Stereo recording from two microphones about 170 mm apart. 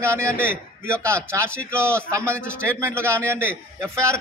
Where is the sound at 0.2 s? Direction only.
5° left (ahead or behind).